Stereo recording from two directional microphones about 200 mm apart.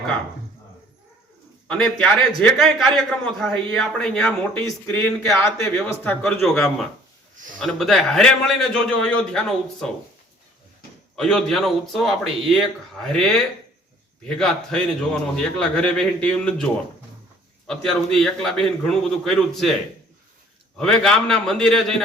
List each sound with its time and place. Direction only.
1.8 s a man's voice: centre (ahead or behind)
5.4 s a man's voice: 15° left (ahead or behind)
11.2 s a man's voice: centre (ahead or behind)
17.7 s a man's voice: 5° left (ahead or behind)
20.7 s a man's voice: 5° left (ahead or behind)